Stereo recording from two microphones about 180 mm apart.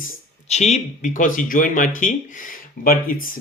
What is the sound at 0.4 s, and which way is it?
Speech, 35° left (ahead or behind).